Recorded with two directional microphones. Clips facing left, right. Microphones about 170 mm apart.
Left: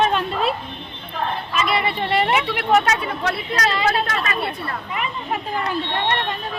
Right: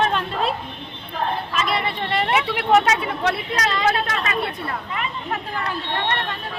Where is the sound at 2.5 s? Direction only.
25° right (ahead or behind).